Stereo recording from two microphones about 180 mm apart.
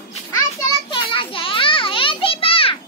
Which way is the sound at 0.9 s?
30° left (ahead or behind).